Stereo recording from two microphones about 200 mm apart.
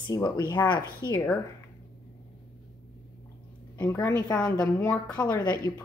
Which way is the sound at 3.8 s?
10° left (ahead or behind).